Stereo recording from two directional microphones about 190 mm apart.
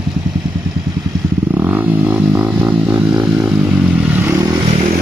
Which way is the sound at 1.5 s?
10° right (ahead or behind).